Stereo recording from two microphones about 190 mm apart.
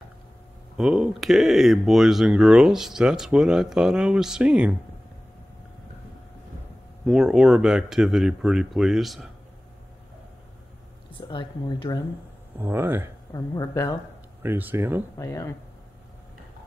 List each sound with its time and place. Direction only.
0.7 s speech: 5° right (ahead or behind)
7.1 s speech: 5° right (ahead or behind)
11.1 s speech: 25° left (ahead or behind)
12.5 s speech: 10° right (ahead or behind)
13.3 s speech: 20° left (ahead or behind)
14.4 s speech: 10° right (ahead or behind)
15.1 s speech: 15° left (ahead or behind)